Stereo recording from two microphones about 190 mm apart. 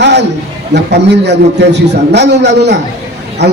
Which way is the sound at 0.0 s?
65° right (ahead or behind).